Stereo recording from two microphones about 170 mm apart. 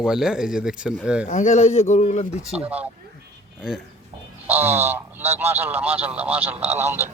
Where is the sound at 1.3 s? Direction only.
45° left (ahead or behind).